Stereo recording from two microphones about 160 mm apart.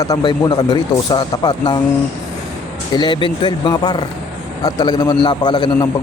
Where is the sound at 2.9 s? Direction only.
30° left (ahead or behind).